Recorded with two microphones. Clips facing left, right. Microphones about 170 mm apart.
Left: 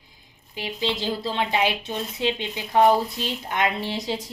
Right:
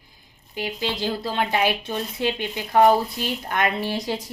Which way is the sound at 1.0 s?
25° left (ahead or behind).